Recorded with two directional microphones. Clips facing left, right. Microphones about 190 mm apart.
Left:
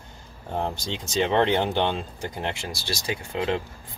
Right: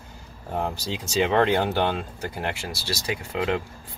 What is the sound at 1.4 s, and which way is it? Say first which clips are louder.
Speech: even; 25° left (ahead or behind).